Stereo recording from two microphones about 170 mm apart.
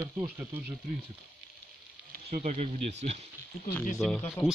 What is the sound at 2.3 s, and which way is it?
Speech, 45° right (ahead or behind).